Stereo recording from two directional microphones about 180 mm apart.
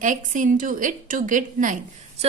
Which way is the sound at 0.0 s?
45° right (ahead or behind).